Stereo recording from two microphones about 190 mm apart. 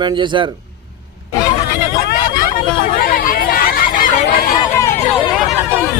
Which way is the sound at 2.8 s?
50° left (ahead or behind).